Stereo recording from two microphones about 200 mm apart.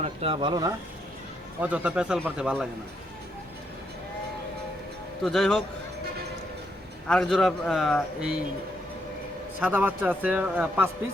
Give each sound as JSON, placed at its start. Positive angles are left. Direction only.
{"t": 0.2, "sound": "speech", "side_deg": -25}
{"t": 1.6, "sound": "a man's voice", "side_deg": -5}
{"t": 5.2, "sound": "a man's voice", "side_deg": 0}
{"t": 7.1, "sound": "a man's voice", "side_deg": 0}
{"t": 9.6, "sound": "a man's voice", "side_deg": -10}